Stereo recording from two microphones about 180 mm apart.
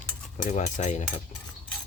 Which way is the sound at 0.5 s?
40° left (ahead or behind).